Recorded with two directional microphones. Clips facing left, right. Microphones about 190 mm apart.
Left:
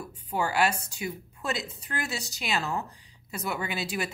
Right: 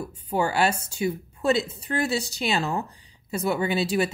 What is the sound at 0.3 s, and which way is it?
A woman's voice, 30° right (ahead or behind).